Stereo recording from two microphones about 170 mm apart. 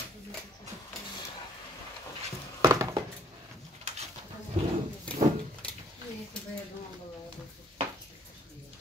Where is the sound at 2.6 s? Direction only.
20° right (ahead or behind).